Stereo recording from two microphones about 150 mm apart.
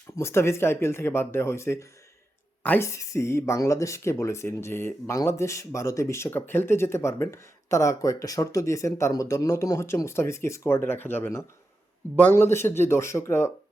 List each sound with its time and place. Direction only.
0.2 s speech: 15° left (ahead or behind)